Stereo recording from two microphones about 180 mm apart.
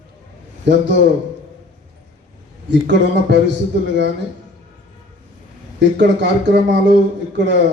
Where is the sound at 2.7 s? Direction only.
75° right (ahead or behind).